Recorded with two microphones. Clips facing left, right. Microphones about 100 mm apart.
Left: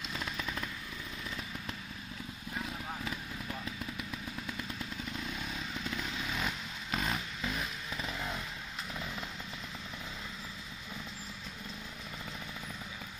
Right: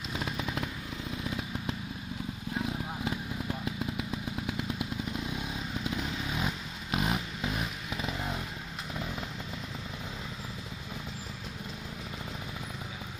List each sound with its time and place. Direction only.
0.4 s motorcycle: 15° right (ahead or behind)
2.6 s vehicle: 20° right (ahead or behind)